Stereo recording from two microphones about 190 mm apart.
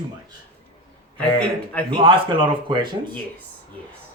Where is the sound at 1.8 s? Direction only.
25° right (ahead or behind).